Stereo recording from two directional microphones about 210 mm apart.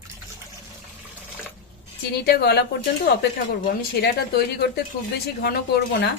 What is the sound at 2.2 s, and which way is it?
Speech, 50° left (ahead or behind).